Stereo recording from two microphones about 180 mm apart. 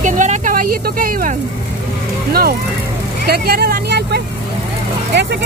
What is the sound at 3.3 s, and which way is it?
Vehicle, 55° right (ahead or behind).